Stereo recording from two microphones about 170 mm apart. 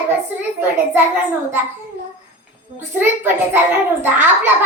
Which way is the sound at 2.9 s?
10° right (ahead or behind).